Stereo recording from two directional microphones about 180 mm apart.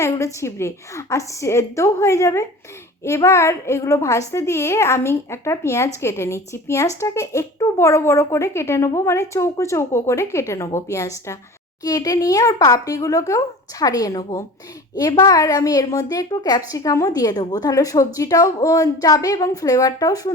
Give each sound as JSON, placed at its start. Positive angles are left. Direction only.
{"t": 0.0, "sound": "a woman's voice", "side_deg": 15}